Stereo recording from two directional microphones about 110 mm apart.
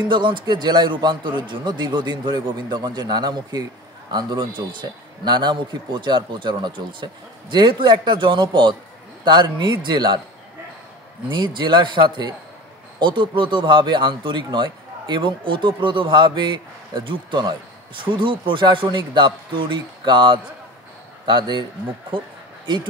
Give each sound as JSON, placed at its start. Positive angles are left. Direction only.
{"t": 0.1, "sound": "a man's voice", "side_deg": -45}
{"t": 11.2, "sound": "speech", "side_deg": -45}